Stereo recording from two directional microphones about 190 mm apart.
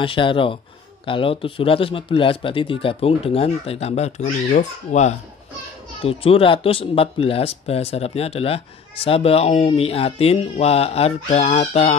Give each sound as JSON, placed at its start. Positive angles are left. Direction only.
{"t": 0.0, "sound": "speech", "side_deg": 25}